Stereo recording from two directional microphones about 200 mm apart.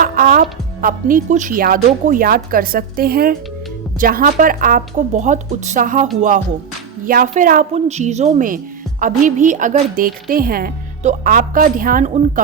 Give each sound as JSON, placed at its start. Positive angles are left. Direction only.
{"t": 0.0, "sound": "music", "side_deg": -45}
{"t": 0.8, "sound": "a woman's voice", "side_deg": -45}
{"t": 7.1, "sound": "a woman's voice", "side_deg": -45}